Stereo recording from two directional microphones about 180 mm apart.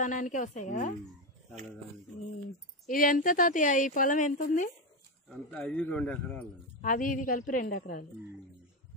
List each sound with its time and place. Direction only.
0.0 s a woman's voice: 45° left (ahead or behind)
2.9 s a woman's voice: 50° left (ahead or behind)
5.3 s a man's voice: 5° left (ahead or behind)
6.8 s a woman's voice: 50° left (ahead or behind)